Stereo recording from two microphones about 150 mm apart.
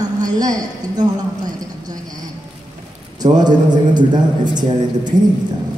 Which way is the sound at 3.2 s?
30° right (ahead or behind).